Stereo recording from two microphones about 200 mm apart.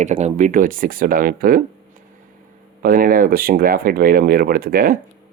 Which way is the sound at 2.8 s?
45° right (ahead or behind).